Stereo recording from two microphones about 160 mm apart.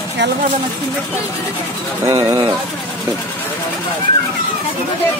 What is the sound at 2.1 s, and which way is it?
Speech, 20° right (ahead or behind).